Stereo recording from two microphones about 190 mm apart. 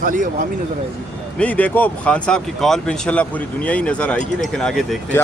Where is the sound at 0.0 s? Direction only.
45° right (ahead or behind).